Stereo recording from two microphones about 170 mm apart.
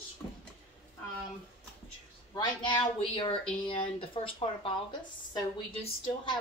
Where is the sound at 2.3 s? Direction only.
25° left (ahead or behind).